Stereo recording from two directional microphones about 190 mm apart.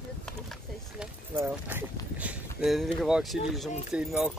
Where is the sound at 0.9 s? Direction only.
10° right (ahead or behind).